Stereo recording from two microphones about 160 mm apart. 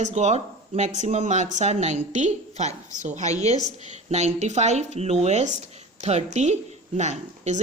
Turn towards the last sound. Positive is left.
turn(degrees=-45)  # may be behind; listen again after turning